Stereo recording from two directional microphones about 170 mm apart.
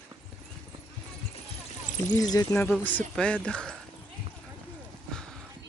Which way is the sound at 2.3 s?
20° left (ahead or behind).